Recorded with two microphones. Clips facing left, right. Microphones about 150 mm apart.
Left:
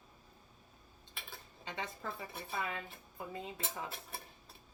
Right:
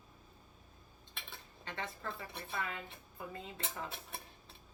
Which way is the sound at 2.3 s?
5° left (ahead or behind).